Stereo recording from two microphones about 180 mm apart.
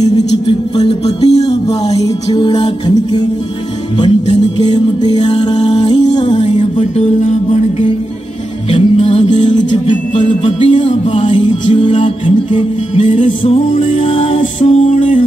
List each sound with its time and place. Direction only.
0.0 s music: 25° left (ahead or behind)
6.3 s music: 40° left (ahead or behind)
8.6 s music: 35° left (ahead or behind)
11.3 s music: 30° left (ahead or behind)
13.0 s music: 45° left (ahead or behind)